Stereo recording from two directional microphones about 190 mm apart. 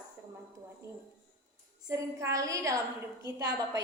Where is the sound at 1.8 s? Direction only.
15° right (ahead or behind).